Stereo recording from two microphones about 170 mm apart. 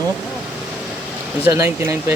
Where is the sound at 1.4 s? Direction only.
15° right (ahead or behind).